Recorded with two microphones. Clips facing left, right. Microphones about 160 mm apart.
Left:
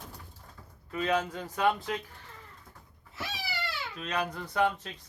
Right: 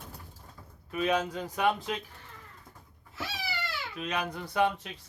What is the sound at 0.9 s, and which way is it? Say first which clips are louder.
Speech: right 1 dB; 15° right (ahead or behind).